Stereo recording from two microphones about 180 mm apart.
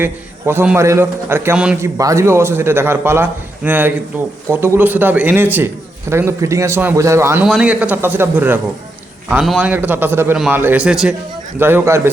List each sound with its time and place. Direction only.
0.0 s a man's voice: 10° right (ahead or behind)
7.4 s a man's voice: 5° right (ahead or behind)